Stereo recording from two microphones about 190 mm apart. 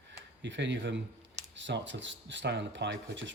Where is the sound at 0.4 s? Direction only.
70° right (ahead or behind).